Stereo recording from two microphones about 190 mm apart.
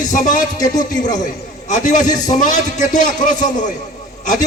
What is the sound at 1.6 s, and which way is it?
A man's voice, 40° left (ahead or behind).